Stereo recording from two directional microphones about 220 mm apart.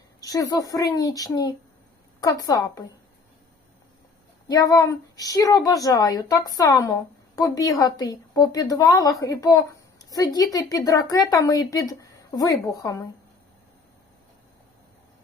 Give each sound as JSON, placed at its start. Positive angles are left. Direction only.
{"t": 0.2, "sound": "a woman's voice", "side_deg": 15}
{"t": 4.4, "sound": "a woman's voice", "side_deg": 15}